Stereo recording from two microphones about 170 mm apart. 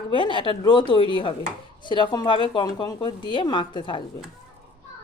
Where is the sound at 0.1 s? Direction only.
30° left (ahead or behind).